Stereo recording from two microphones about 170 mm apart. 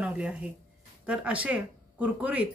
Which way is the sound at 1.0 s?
5° right (ahead or behind).